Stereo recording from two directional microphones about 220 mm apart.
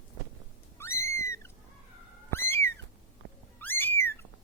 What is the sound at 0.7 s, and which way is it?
Cat, 10° left (ahead or behind).